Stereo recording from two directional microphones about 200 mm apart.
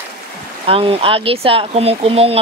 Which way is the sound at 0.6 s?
25° right (ahead or behind).